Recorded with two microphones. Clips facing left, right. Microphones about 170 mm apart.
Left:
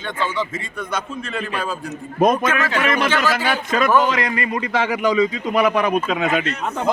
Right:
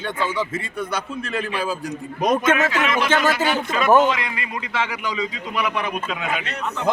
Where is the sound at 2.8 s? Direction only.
50° left (ahead or behind).